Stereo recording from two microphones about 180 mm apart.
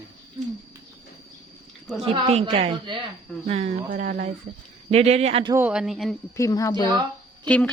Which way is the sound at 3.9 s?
50° right (ahead or behind).